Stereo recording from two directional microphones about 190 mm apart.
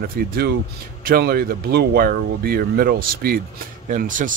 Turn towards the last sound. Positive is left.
turn(degrees=-45)  # may be behind; listen again after turning